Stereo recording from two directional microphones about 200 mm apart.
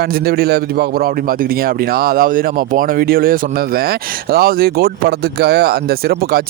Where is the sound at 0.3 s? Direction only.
50° right (ahead or behind).